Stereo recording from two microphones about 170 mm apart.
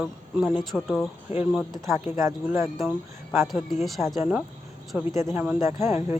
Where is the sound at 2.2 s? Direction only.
15° right (ahead or behind).